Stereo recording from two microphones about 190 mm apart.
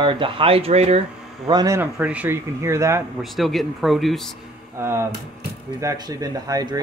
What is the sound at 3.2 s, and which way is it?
Speech, centre (ahead or behind).